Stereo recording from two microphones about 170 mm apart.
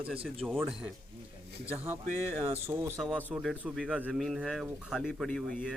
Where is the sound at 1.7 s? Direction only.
10° right (ahead or behind).